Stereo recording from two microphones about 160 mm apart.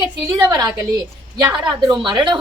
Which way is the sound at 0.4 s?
25° right (ahead or behind).